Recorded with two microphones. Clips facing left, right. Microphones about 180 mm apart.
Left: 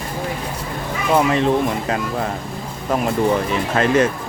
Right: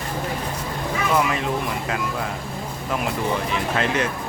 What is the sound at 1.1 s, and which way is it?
Speech, 30° left (ahead or behind).